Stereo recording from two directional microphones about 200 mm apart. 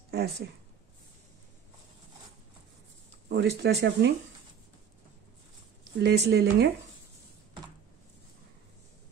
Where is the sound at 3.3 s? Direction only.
55° right (ahead or behind).